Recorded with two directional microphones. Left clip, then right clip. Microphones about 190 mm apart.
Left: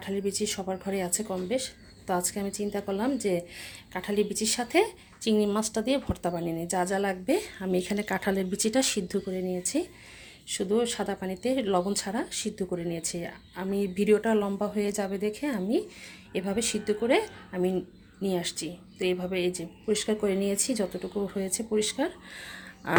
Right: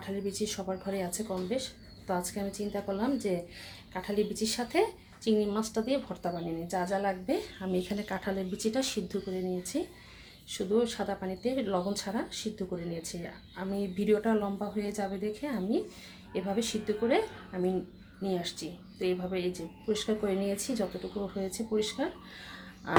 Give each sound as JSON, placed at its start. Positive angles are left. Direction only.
{"t": 0.0, "sound": "speech", "side_deg": 45}